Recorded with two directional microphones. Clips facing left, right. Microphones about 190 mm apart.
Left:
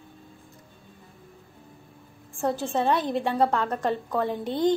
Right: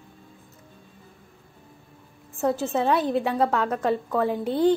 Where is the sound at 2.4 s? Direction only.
5° right (ahead or behind).